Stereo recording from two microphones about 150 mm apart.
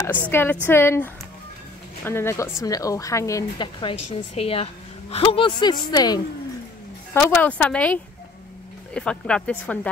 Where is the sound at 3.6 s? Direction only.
35° left (ahead or behind).